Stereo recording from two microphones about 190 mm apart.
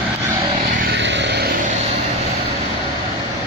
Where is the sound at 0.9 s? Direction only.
70° right (ahead or behind).